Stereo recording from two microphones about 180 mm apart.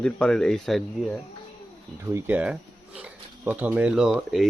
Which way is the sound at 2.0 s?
10° right (ahead or behind).